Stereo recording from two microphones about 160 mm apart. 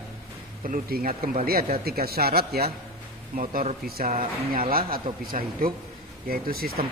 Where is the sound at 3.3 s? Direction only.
55° right (ahead or behind).